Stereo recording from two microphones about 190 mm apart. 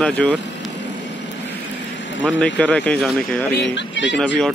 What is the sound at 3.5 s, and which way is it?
Speech, 70° left (ahead or behind).